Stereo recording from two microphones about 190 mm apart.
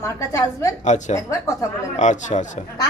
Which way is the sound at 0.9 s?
40° left (ahead or behind).